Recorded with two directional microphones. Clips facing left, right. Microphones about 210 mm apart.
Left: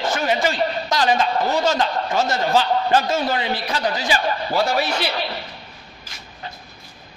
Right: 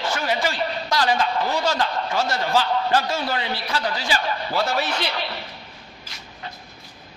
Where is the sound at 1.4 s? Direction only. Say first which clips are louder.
Left 3 dB; 45° left (ahead or behind).